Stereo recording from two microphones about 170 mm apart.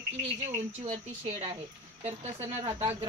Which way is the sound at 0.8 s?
40° right (ahead or behind).